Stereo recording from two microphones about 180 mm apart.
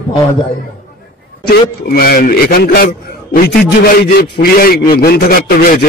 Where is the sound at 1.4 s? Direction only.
55° left (ahead or behind).